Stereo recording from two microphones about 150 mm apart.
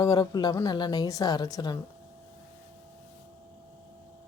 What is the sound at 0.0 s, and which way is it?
A woman's voice, 25° left (ahead or behind).